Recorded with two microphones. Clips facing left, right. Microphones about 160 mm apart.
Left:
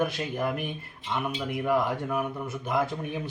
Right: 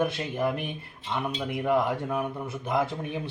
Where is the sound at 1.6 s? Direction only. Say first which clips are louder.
Right 1 dB; 25° right (ahead or behind).